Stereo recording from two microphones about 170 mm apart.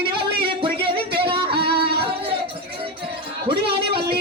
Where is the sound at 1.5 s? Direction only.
70° right (ahead or behind).